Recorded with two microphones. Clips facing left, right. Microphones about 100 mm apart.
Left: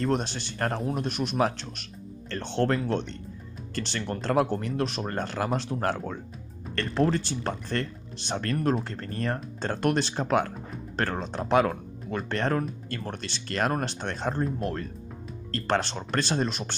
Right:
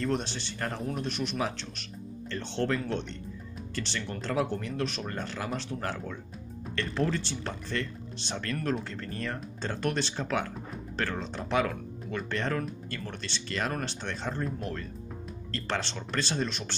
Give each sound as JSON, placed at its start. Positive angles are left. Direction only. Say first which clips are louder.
{"t": 0.0, "sound": "speech", "louder": "left 3 dB", "side_deg": 45}